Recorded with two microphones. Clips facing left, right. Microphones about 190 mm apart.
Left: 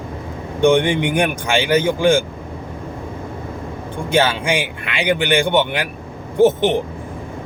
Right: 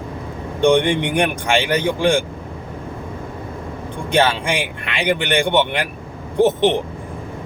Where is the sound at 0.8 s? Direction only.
5° left (ahead or behind).